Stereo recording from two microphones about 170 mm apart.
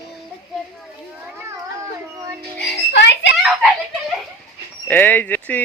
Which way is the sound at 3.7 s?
Centre (ahead or behind).